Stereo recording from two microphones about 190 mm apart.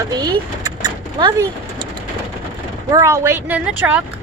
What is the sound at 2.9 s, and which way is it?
Speech, 15° right (ahead or behind).